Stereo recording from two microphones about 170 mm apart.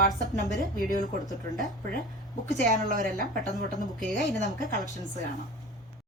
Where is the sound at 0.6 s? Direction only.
55° right (ahead or behind).